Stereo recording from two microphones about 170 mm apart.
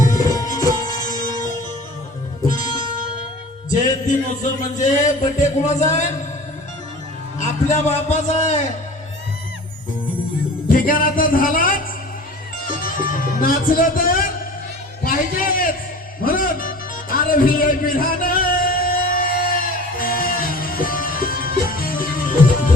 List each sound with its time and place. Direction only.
0.3 s music: 20° left (ahead or behind)
1.2 s music: 50° left (ahead or behind)
3.7 s a man's voice: 45° left (ahead or behind)
7.3 s a man's voice: 40° left (ahead or behind)
10.7 s music: 55° left (ahead or behind)
12.6 s speech: 55° left (ahead or behind)
15.0 s music: 55° left (ahead or behind)